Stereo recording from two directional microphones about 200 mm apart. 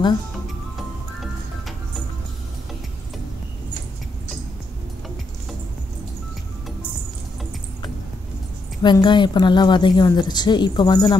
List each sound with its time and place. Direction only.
8.8 s a woman's voice: 20° left (ahead or behind)